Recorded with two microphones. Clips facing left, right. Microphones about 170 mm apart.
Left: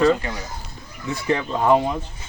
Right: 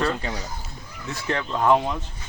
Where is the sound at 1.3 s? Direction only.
10° left (ahead or behind).